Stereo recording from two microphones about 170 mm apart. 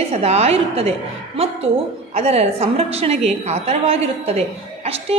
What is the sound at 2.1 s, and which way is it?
A woman's voice, 40° right (ahead or behind).